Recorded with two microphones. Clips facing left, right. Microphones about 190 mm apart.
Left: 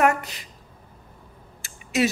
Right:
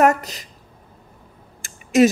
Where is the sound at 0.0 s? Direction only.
40° right (ahead or behind).